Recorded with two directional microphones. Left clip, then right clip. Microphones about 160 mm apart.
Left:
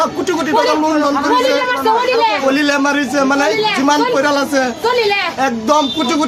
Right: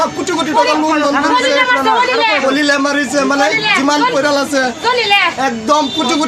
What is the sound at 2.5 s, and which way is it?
Speech, 30° left (ahead or behind).